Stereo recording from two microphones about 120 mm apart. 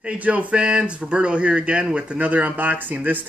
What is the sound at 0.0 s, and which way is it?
Speech, 10° right (ahead or behind).